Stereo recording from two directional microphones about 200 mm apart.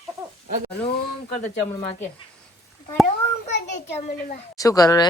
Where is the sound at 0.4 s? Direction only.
40° right (ahead or behind).